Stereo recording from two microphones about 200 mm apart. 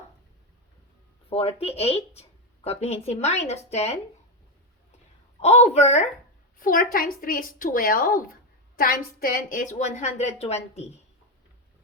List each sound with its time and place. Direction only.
1.3 s a woman's voice: 30° left (ahead or behind)
5.4 s a woman's voice: 35° left (ahead or behind)